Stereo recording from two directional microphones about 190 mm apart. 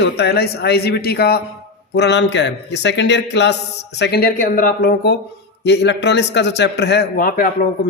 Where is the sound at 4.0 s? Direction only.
55° left (ahead or behind).